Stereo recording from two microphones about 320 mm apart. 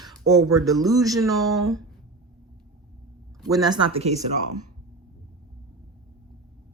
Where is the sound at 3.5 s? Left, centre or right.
Centre.